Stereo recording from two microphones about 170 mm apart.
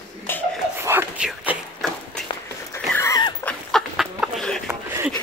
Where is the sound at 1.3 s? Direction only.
Centre (ahead or behind).